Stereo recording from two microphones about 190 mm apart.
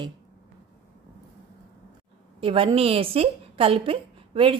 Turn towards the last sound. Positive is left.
turn(degrees=-30)  # may be behind; listen again after turning